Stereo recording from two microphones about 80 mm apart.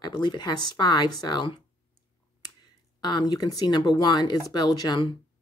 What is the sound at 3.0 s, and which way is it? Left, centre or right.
Speech, left.